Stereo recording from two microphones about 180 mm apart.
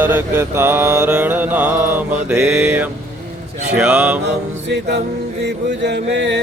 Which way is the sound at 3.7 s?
5° right (ahead or behind).